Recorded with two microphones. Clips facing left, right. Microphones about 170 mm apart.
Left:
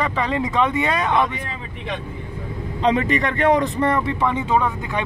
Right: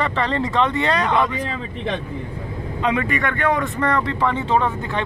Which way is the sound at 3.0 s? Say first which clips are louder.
Left 2 dB; 25° left (ahead or behind).